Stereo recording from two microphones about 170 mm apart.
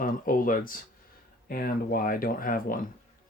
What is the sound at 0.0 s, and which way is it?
Speech, 55° left (ahead or behind).